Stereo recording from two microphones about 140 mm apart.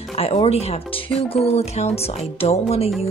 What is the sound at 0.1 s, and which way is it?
Speech, 45° left (ahead or behind).